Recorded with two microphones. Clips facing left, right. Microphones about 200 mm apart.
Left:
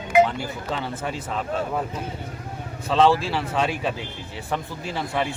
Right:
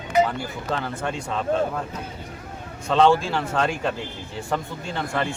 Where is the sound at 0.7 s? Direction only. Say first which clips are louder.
Right 2 dB; centre (ahead or behind).